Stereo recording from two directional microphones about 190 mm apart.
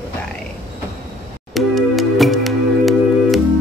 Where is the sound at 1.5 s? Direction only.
Centre (ahead or behind).